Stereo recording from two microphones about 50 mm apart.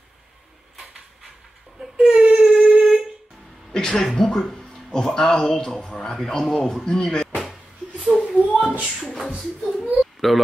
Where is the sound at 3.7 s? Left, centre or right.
Centre.